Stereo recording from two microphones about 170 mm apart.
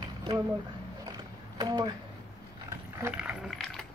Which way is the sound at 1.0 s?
25° right (ahead or behind).